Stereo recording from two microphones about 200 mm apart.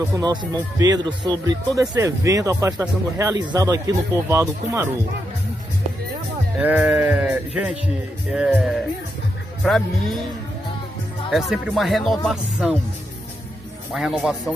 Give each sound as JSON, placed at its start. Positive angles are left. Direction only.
{"t": 0.0, "sound": "speech", "side_deg": -15}
{"t": 6.6, "sound": "speech", "side_deg": -5}
{"t": 11.2, "sound": "speech", "side_deg": 0}
{"t": 13.9, "sound": "speech", "side_deg": 0}